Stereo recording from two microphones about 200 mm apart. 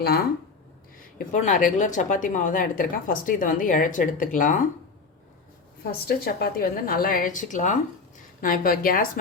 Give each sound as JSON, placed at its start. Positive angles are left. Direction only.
{"t": 0.0, "sound": "a woman's voice", "side_deg": 50}
{"t": 1.3, "sound": "speech", "side_deg": 35}
{"t": 5.8, "sound": "a woman's voice", "side_deg": 50}